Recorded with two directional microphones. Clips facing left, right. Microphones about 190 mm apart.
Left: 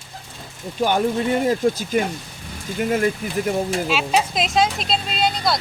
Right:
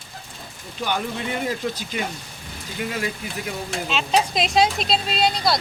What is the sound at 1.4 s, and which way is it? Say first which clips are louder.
Speech: left 7 dB; 45° left (ahead or behind).